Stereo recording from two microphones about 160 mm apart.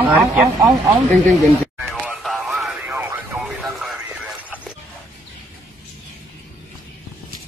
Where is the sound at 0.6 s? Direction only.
25° right (ahead or behind).